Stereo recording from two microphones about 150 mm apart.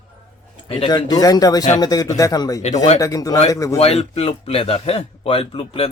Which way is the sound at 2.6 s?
50° left (ahead or behind).